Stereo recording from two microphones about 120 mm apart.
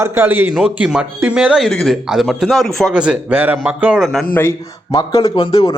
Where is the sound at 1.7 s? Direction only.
5° left (ahead or behind).